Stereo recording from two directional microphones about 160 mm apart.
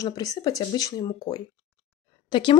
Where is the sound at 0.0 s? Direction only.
25° left (ahead or behind).